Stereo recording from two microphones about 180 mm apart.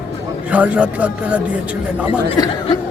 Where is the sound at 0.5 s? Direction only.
10° right (ahead or behind).